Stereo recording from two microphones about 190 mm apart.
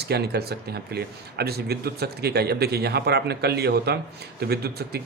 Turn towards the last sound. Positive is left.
turn(degrees=-55)  # may be behind; listen again after turning